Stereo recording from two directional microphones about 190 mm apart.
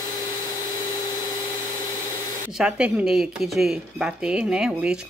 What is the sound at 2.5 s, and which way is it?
Speech, 5° right (ahead or behind).